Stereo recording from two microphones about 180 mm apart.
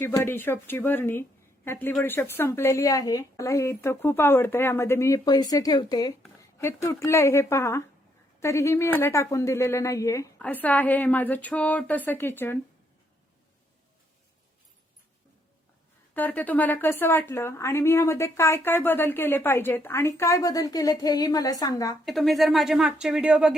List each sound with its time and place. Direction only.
0.0 s a woman's voice: 10° left (ahead or behind)
16.1 s a woman's voice: 10° left (ahead or behind)
22.0 s speech: centre (ahead or behind)